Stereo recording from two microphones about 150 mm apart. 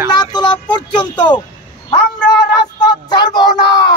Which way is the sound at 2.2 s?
30° left (ahead or behind).